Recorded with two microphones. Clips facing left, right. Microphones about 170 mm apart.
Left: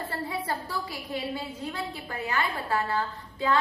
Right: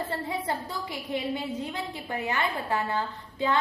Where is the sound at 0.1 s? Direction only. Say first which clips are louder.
Right 1 dB; 20° right (ahead or behind).